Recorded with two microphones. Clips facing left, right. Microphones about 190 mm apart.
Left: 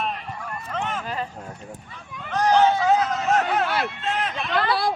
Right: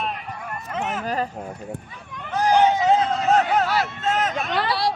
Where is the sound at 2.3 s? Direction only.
10° right (ahead or behind); by 4.5 s 45° right (ahead or behind).